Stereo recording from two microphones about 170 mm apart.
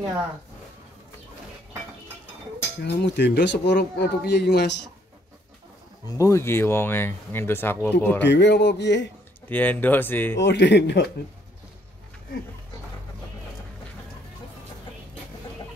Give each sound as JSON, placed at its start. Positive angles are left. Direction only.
{"t": 2.8, "sound": "speech", "side_deg": 85}
{"t": 6.0, "sound": "speech", "side_deg": 20}
{"t": 8.3, "sound": "speech", "side_deg": 90}
{"t": 9.5, "sound": "speech", "side_deg": 10}
{"t": 10.4, "sound": "speech", "side_deg": 90}